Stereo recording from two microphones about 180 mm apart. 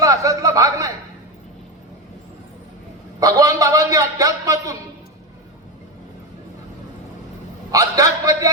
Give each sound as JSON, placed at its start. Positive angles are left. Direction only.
{"t": 0.0, "sound": "a sound", "side_deg": -20}
{"t": 3.2, "sound": "a man's voice", "side_deg": -20}
{"t": 7.7, "sound": "a man's voice", "side_deg": -20}